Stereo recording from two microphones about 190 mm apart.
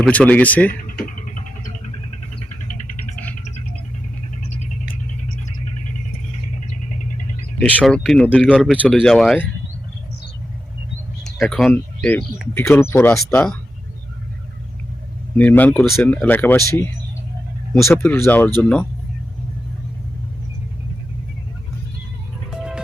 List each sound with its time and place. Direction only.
0.0 s speech: 10° left (ahead or behind)
1.0 s music: 45° left (ahead or behind)
7.6 s speech: 5° left (ahead or behind)
11.2 s a sound: centre (ahead or behind)
11.7 s speech: 10° left (ahead or behind)
15.4 s speech: 10° left (ahead or behind)
17.8 s speech: 10° left (ahead or behind)
22.4 s music: 5° right (ahead or behind)